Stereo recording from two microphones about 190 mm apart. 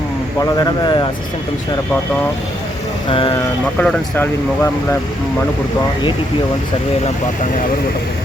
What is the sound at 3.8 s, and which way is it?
Speech, 5° left (ahead or behind).